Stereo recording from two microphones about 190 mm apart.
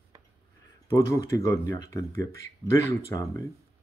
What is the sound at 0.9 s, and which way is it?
Speech, 15° left (ahead or behind).